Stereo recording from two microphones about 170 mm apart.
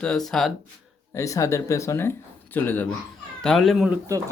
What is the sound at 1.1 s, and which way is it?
Speech, 20° left (ahead or behind).